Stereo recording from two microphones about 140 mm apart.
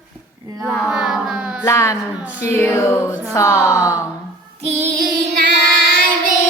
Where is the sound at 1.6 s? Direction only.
20° left (ahead or behind).